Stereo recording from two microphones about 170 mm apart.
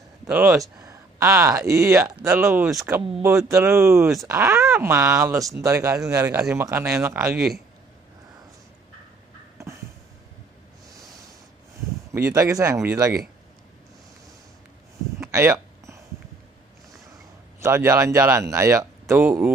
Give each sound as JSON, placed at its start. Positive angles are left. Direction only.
{"t": 0.3, "sound": "speech", "side_deg": -10}
{"t": 7.3, "sound": "speech", "side_deg": -5}
{"t": 12.1, "sound": "speech", "side_deg": -15}
{"t": 15.1, "sound": "a sound", "side_deg": -15}
{"t": 17.6, "sound": "speech", "side_deg": -15}